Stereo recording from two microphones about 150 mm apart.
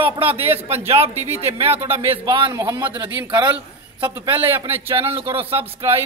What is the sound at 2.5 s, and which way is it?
Speech, 20° right (ahead or behind).